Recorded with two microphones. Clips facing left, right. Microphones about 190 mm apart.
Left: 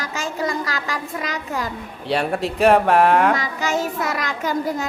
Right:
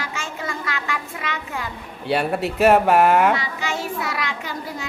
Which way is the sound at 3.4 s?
40° left (ahead or behind).